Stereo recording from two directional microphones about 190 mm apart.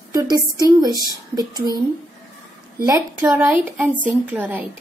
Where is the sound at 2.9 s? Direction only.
10° right (ahead or behind).